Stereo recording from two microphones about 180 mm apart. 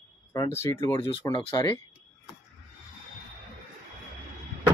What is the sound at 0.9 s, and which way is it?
Speech, 30° left (ahead or behind).